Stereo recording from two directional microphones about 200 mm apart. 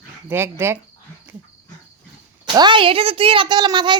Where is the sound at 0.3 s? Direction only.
10° right (ahead or behind).